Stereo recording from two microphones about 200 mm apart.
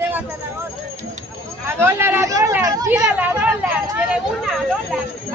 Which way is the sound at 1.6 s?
10° right (ahead or behind).